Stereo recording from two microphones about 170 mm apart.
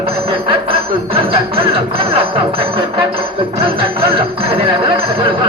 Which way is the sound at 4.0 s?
35° right (ahead or behind).